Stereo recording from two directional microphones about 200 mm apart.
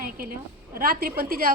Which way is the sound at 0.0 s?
45° right (ahead or behind).